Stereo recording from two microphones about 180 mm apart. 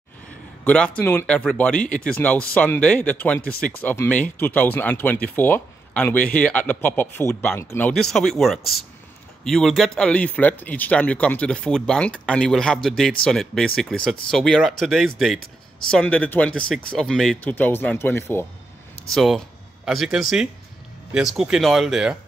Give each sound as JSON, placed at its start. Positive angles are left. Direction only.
{"t": 0.7, "sound": "speech", "side_deg": 5}
{"t": 7.9, "sound": "speech", "side_deg": 0}
{"t": 19.1, "sound": "speech", "side_deg": 0}